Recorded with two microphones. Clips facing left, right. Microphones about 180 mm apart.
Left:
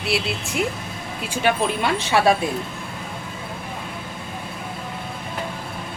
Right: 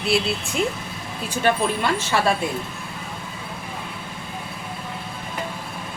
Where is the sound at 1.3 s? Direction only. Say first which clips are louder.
Even; 10° left (ahead or behind).